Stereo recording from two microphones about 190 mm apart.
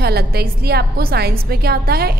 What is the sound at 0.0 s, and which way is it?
A woman's voice, 55° right (ahead or behind).